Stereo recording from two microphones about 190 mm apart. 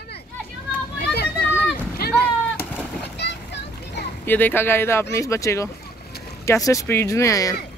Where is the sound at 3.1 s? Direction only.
65° left (ahead or behind).